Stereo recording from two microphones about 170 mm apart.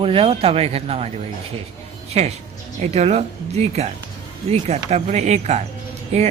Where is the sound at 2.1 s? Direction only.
40° right (ahead or behind).